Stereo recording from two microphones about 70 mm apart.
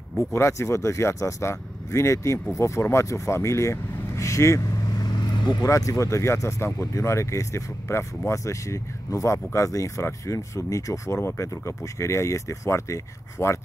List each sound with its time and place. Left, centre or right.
0.3 s speech: left
4.9 s vehicle: left
5.7 s speech: left